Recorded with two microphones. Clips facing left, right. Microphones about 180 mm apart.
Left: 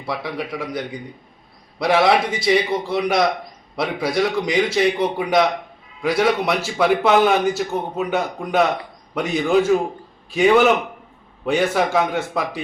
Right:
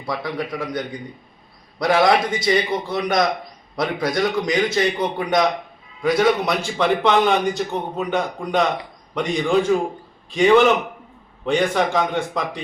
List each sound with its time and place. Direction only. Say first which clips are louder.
0.0 s a man's voice: right 1 dB; 5° left (ahead or behind)